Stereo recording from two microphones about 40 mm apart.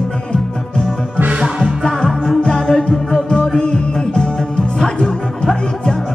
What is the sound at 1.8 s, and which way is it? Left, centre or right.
Music, left.